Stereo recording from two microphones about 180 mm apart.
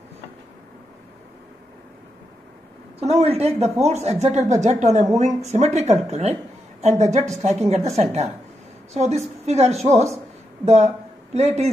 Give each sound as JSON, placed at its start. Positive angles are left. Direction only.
{"t": 3.0, "sound": "speech", "side_deg": -35}